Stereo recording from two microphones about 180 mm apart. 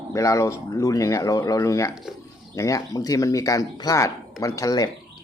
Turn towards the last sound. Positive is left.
turn(degrees=20)  # may be behind; listen again after turning